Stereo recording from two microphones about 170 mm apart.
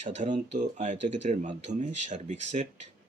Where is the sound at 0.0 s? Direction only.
45° right (ahead or behind).